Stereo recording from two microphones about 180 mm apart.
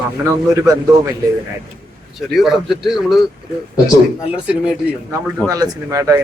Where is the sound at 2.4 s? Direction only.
Centre (ahead or behind).